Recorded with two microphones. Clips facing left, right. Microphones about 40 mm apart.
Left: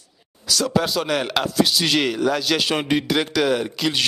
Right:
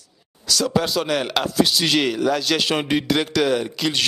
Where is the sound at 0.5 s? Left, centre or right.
Centre.